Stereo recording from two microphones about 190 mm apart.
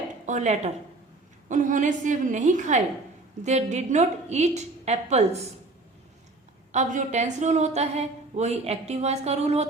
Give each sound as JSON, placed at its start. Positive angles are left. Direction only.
{"t": 0.3, "sound": "a woman's voice", "side_deg": -40}
{"t": 6.7, "sound": "a woman's voice", "side_deg": -40}